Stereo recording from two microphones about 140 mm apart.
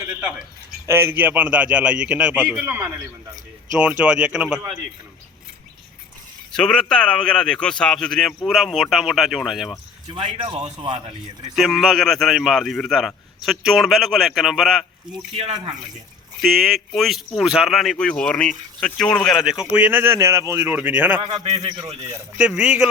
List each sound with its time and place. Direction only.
0.0 s a sound: 15° right (ahead or behind)
0.9 s a man's voice: 15° right (ahead or behind)
3.8 s a man's voice: 10° right (ahead or behind)
6.5 s a man's voice: 5° left (ahead or behind)
10.1 s a man's voice: 35° right (ahead or behind)
11.5 s a man's voice: centre (ahead or behind)
15.4 s speech: 45° right (ahead or behind)
16.4 s a man's voice: centre (ahead or behind)
19.7 s a man's voice: 15° right (ahead or behind)
21.2 s a man's voice: 30° right (ahead or behind)
21.4 s speech: 50° right (ahead or behind)
22.4 s a man's voice: 5° right (ahead or behind)